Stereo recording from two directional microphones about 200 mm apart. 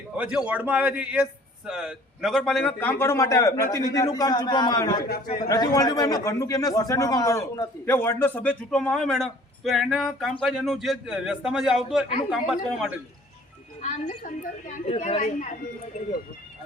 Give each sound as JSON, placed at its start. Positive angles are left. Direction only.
{"t": 0.2, "sound": "a man's voice", "side_deg": -5}
{"t": 5.0, "sound": "speech", "side_deg": 50}
{"t": 5.5, "sound": "a man's voice", "side_deg": 20}
{"t": 13.8, "sound": "a woman's voice", "side_deg": 35}